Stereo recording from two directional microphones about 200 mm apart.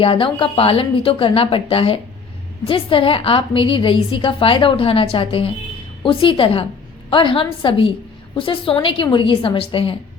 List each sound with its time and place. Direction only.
0.0 s a woman's voice: 25° left (ahead or behind)